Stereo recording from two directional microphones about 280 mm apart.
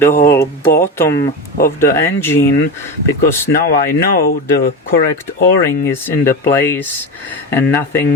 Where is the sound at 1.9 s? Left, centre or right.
Centre.